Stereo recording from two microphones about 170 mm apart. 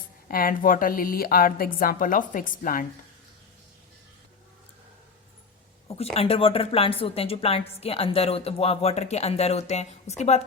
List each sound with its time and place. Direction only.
0.3 s a woman's voice: 55° left (ahead or behind)
6.1 s a woman's voice: 35° left (ahead or behind)